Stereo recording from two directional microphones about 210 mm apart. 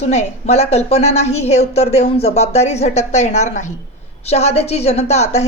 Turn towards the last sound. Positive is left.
turn(degrees=30)  # may be behind; listen again after turning